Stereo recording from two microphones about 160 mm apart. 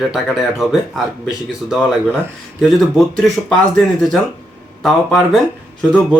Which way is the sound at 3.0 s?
Centre (ahead or behind).